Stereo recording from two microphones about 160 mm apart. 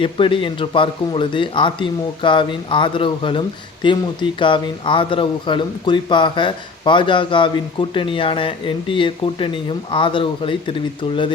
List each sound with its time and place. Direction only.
0.0 s speech: 35° left (ahead or behind)